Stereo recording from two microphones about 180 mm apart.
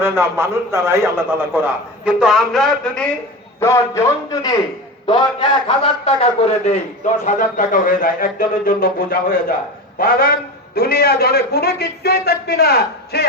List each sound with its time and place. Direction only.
0.0 s a man's voice: 15° right (ahead or behind); by 3.1 s 5° left (ahead or behind)
3.6 s a man's voice: 15° left (ahead or behind)
5.0 s a man's voice: 25° left (ahead or behind); by 13.2 s 60° left (ahead or behind)